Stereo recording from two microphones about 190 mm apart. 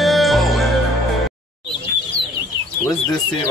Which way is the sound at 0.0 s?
Centre (ahead or behind).